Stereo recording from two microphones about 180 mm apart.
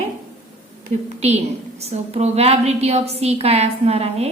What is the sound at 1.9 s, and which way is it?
A woman's voice, 35° right (ahead or behind).